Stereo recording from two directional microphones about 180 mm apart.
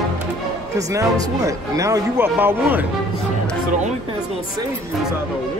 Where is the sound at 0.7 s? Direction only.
20° right (ahead or behind).